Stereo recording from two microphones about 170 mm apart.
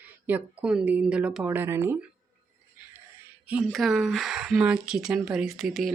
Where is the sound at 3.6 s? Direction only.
Centre (ahead or behind).